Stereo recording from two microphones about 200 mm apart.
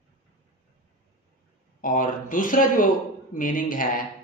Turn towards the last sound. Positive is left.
turn(degrees=45)  # may be behind; listen again after turning